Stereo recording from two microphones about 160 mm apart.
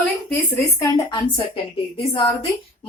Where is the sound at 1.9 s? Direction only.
30° left (ahead or behind).